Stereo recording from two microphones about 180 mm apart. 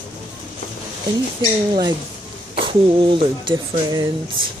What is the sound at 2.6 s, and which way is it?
Speech, 30° right (ahead or behind).